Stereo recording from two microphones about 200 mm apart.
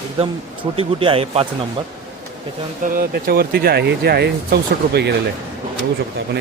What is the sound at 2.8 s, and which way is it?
Speech, 45° right (ahead or behind).